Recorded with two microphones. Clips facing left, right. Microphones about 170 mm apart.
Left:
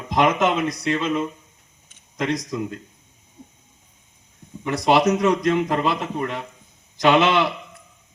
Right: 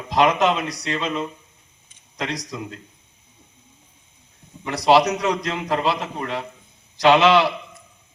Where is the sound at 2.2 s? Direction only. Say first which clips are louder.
Left 4 dB; 50° left (ahead or behind).